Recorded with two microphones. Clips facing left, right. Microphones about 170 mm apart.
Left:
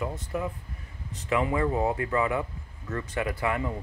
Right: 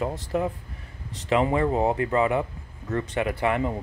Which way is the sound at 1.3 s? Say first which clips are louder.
Right 4 dB; 25° right (ahead or behind).